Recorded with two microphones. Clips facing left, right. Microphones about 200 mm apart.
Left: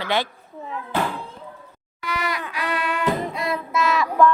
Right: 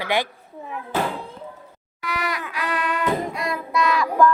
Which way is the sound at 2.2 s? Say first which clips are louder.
Even; 25° left (ahead or behind).